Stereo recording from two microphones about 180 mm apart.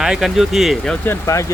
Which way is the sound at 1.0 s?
15° left (ahead or behind).